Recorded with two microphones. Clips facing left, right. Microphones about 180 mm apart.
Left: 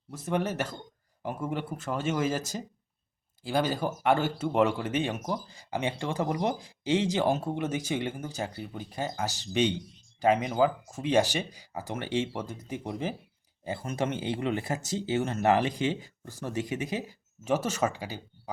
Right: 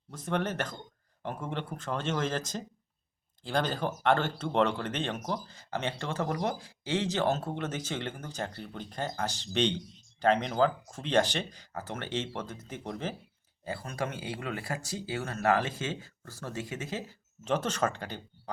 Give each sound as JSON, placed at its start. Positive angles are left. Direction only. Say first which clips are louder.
{"t": 0.1, "sound": "speech", "louder": "left 2 dB", "side_deg": 5}